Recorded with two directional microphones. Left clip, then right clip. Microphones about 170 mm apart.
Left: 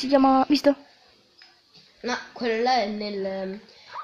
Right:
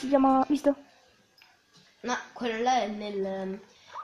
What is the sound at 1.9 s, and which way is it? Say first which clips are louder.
A woman's voice: left 3 dB; 45° left (ahead or behind).